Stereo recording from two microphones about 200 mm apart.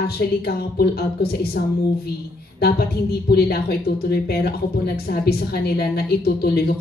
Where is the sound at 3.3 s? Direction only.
50° left (ahead or behind).